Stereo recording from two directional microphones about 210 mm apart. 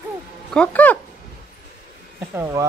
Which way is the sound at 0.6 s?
5° left (ahead or behind).